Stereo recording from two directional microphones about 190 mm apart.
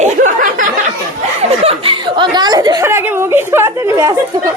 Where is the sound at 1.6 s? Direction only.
25° right (ahead or behind).